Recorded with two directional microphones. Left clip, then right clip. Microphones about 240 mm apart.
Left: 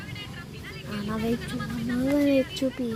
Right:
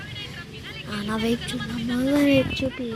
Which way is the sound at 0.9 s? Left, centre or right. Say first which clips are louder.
Right 4 dB; centre.